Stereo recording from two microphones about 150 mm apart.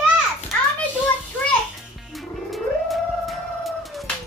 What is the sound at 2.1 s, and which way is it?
Cat, centre (ahead or behind).